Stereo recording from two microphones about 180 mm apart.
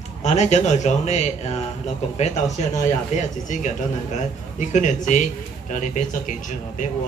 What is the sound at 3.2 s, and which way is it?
A man's voice, 40° left (ahead or behind).